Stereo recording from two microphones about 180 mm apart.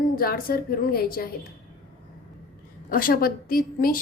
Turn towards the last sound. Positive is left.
turn(degrees=55)  # may be behind; listen again after turning